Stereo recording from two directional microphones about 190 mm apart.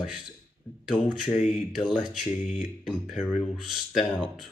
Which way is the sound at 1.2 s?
35° left (ahead or behind).